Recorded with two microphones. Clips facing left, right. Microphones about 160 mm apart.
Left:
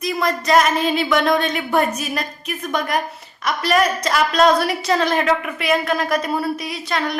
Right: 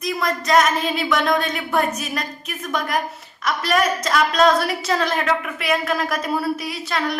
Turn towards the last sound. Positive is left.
turn(degrees=0)  # may be behind; listen again after turning